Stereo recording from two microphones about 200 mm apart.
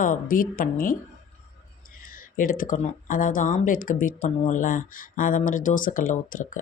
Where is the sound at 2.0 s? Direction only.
45° left (ahead or behind).